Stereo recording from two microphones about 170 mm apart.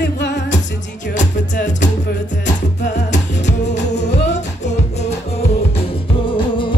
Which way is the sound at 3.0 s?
45° left (ahead or behind).